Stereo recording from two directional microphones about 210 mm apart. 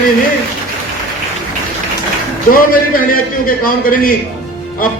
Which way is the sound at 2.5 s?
40° left (ahead or behind).